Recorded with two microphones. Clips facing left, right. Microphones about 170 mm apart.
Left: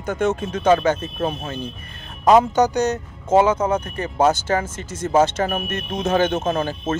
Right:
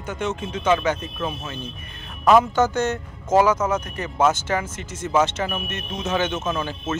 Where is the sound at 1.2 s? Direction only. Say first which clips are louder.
Left 4 dB; 45° left (ahead or behind).